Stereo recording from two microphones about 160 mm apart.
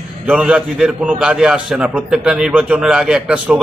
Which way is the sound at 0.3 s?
5° right (ahead or behind).